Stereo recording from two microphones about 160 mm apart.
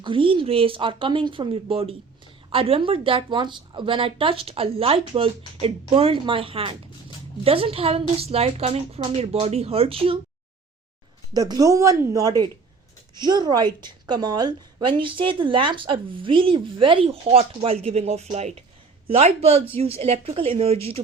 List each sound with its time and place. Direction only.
0.0 s a woman's voice: 30° right (ahead or behind)
11.3 s a woman's voice: 25° right (ahead or behind)